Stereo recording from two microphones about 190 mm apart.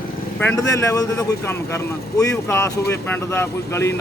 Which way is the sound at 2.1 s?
15° left (ahead or behind).